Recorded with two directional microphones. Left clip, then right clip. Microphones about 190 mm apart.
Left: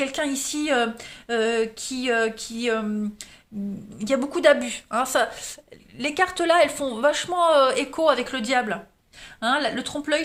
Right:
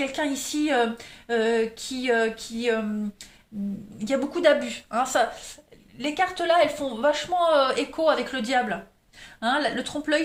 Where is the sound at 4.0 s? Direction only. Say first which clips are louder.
Left 2 dB; 40° left (ahead or behind).